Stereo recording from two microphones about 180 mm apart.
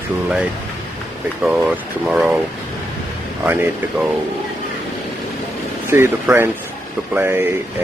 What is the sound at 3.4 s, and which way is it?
Speech, 10° right (ahead or behind).